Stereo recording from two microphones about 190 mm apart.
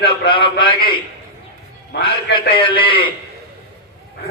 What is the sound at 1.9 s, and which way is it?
Speech, 65° left (ahead or behind).